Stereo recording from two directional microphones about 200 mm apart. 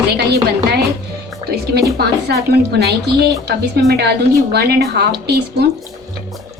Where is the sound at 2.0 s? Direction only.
55° right (ahead or behind).